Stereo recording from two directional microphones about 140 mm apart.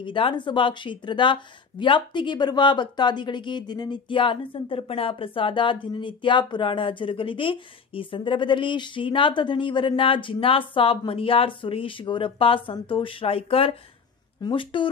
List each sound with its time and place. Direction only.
0.0 s speech: 35° left (ahead or behind)